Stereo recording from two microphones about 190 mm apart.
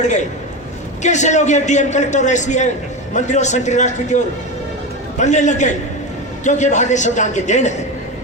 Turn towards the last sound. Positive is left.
turn(degrees=40)  # may be behind; listen again after turning